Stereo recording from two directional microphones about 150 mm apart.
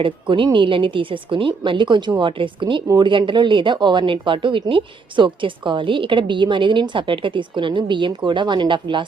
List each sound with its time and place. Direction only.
0.0 s a woman's voice: 35° right (ahead or behind)
2.8 s speech: 20° right (ahead or behind)
3.1 s a woman's voice: 35° right (ahead or behind)